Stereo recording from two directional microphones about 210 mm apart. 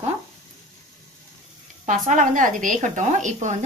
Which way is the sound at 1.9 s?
35° right (ahead or behind).